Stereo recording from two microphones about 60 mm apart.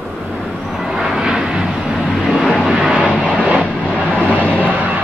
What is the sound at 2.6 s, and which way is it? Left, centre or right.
Music, centre.